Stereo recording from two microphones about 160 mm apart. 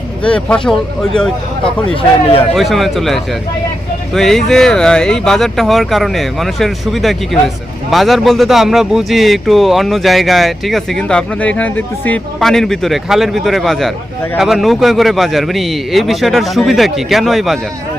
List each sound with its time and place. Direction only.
0.3 s speech: 5° left (ahead or behind)
1.9 s speech: 35° left (ahead or behind)
2.6 s speech: centre (ahead or behind)